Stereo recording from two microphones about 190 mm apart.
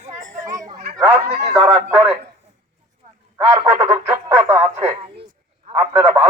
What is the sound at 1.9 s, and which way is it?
Speech, 10° right (ahead or behind).